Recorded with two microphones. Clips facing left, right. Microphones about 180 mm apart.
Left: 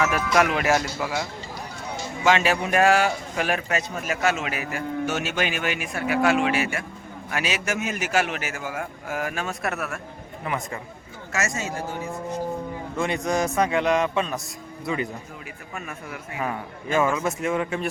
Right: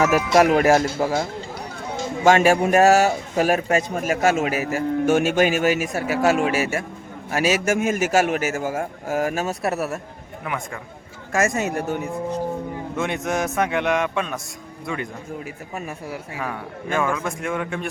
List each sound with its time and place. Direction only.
0.3 s speech: 35° right (ahead or behind)
10.4 s a man's voice: centre (ahead or behind)
11.3 s speech: 55° right (ahead or behind)
13.0 s a man's voice: centre (ahead or behind)
15.7 s speech: 30° right (ahead or behind)
16.4 s a man's voice: 5° left (ahead or behind)